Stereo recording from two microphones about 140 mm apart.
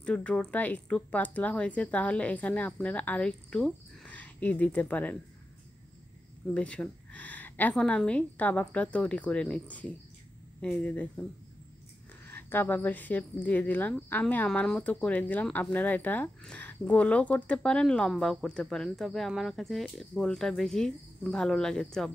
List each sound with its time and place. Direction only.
0.0 s a woman's voice: 10° left (ahead or behind)
6.4 s a woman's voice: 10° left (ahead or behind)
12.3 s a woman's voice: 15° left (ahead or behind)